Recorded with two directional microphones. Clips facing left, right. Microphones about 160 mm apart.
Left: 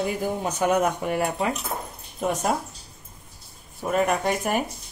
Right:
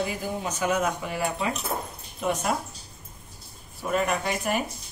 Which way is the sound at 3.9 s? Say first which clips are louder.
Left 4 dB; 45° left (ahead or behind).